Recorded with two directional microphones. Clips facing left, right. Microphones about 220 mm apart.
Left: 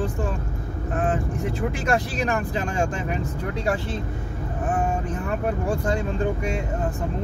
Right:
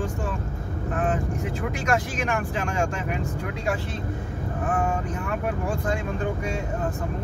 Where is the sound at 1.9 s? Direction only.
35° left (ahead or behind).